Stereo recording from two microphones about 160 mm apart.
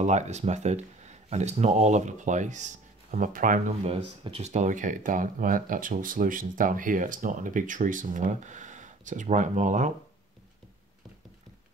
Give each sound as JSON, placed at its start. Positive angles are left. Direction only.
{"t": 0.0, "sound": "speech", "side_deg": -45}
{"t": 3.8, "sound": "speech", "side_deg": -35}